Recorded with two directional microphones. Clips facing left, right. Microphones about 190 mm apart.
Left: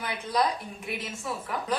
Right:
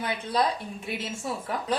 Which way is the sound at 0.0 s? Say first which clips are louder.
Right 1 dB; 25° right (ahead or behind).